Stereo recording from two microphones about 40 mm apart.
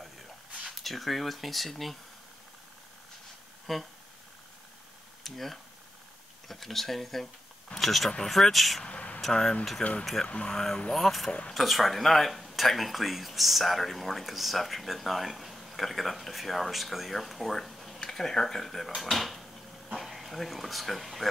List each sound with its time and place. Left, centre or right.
0.7 s speech: centre
3.7 s speech: centre
5.2 s speech: centre
8.8 s a sound: left
9.2 s speech: centre
9.8 s speech: left
10.5 s speech: centre